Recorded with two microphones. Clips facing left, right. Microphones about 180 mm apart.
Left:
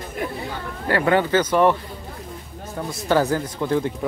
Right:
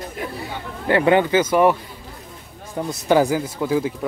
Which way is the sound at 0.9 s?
20° right (ahead or behind).